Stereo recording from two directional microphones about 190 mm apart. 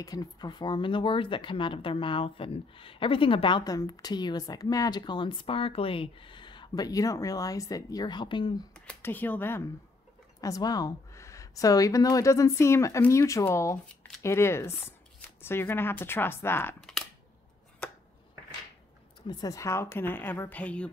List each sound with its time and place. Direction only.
0.0 s speech: 20° left (ahead or behind)
8.7 s speech: 5° left (ahead or behind)
19.2 s speech: 20° left (ahead or behind)